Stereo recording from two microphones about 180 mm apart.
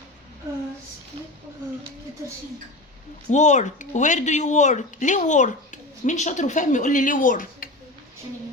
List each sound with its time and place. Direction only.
3.2 s speech: 40° left (ahead or behind)